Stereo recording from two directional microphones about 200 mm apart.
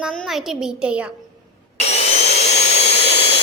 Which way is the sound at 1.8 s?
30° left (ahead or behind).